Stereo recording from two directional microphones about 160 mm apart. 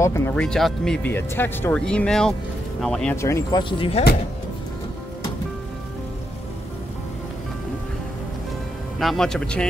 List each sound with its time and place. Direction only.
0.0 s speech: 15° left (ahead or behind)
3.2 s speech: 20° left (ahead or behind)
3.6 s speech: 35° left (ahead or behind)
9.0 s speech: 5° left (ahead or behind)